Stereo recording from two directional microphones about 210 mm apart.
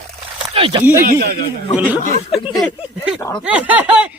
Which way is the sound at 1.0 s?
45° right (ahead or behind).